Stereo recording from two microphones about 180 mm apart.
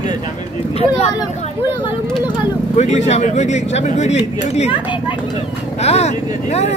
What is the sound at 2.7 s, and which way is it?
Speech, 40° left (ahead or behind).